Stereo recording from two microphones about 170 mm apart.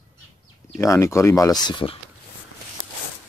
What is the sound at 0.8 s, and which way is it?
Speech, 15° left (ahead or behind).